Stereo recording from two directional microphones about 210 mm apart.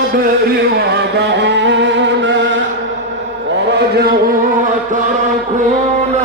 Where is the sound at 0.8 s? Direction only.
55° right (ahead or behind).